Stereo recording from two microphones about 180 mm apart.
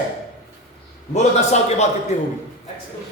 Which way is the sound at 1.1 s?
40° left (ahead or behind).